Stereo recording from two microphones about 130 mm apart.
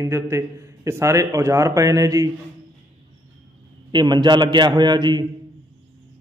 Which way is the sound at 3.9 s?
35° right (ahead or behind).